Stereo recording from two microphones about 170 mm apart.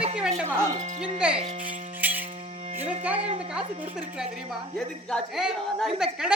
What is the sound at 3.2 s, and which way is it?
Speech, 35° right (ahead or behind).